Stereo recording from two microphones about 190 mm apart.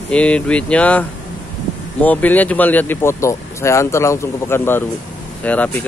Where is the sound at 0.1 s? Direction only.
5° left (ahead or behind).